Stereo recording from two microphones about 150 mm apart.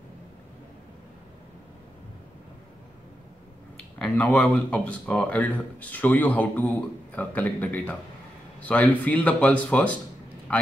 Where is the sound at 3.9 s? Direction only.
5° left (ahead or behind).